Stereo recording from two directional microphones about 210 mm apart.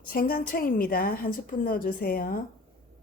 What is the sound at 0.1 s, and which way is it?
Speech, 45° left (ahead or behind).